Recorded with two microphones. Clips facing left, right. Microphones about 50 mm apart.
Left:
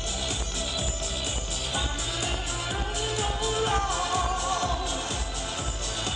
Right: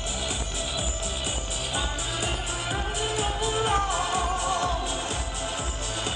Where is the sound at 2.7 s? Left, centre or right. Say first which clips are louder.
Right 2 dB; centre.